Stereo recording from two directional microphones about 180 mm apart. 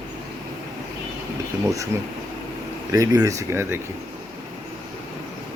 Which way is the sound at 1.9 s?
15° right (ahead or behind).